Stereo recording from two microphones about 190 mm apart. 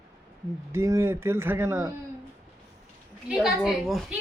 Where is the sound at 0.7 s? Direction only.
15° right (ahead or behind).